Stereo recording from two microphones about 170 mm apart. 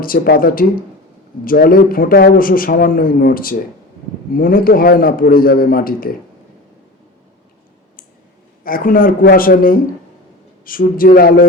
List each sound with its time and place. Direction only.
0.0 s a man's voice: 55° left (ahead or behind)
8.6 s a man's voice: 55° left (ahead or behind)